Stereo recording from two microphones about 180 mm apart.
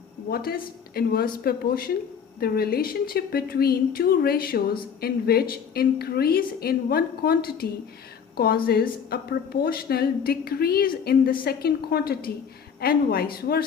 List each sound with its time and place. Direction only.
0.3 s a woman's voice: 60° left (ahead or behind)